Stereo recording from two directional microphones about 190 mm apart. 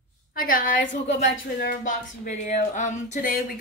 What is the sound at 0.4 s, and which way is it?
Speech, 45° left (ahead or behind).